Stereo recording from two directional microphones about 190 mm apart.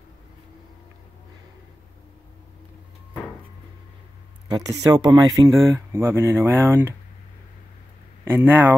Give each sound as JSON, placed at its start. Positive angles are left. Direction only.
{"t": 4.5, "sound": "speech", "side_deg": -20}
{"t": 8.4, "sound": "speech", "side_deg": -10}